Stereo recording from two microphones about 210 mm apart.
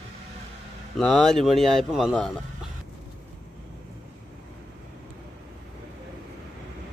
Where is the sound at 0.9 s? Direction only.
Centre (ahead or behind).